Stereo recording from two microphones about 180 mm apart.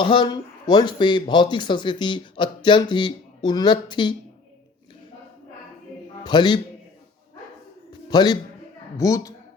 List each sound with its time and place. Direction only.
0.0 s speech: 25° left (ahead or behind)
6.2 s speech: 25° left (ahead or behind)
8.1 s speech: 20° left (ahead or behind)